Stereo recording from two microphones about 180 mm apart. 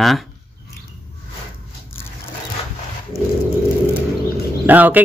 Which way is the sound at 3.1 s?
15° left (ahead or behind).